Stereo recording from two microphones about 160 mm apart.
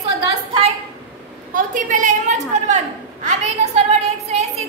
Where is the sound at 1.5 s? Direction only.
55° right (ahead or behind).